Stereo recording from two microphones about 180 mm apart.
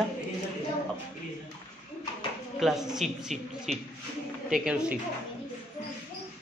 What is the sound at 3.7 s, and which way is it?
Speech, 40° right (ahead or behind).